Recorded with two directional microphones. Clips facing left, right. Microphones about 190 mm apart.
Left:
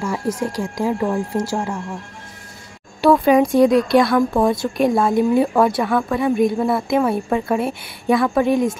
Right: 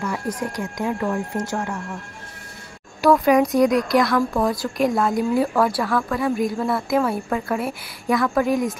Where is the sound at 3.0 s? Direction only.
25° left (ahead or behind).